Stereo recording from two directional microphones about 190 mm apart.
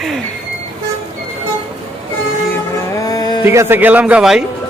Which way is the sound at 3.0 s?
20° left (ahead or behind).